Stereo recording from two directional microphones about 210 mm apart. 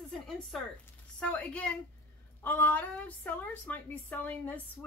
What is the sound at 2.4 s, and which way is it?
A woman's voice, 10° left (ahead or behind).